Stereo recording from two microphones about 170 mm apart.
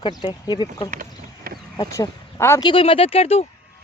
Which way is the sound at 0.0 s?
25° left (ahead or behind).